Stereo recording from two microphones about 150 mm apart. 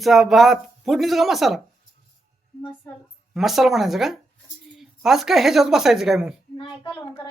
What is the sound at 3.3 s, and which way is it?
Speech, centre (ahead or behind).